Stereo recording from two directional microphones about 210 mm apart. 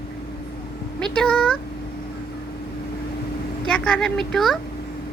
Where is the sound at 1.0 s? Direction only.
5° left (ahead or behind).